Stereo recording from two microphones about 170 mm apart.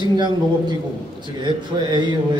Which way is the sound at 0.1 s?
25° right (ahead or behind).